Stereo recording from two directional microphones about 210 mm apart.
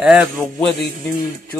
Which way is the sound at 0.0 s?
5° right (ahead or behind).